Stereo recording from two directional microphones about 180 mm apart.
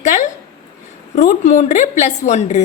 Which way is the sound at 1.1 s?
45° left (ahead or behind).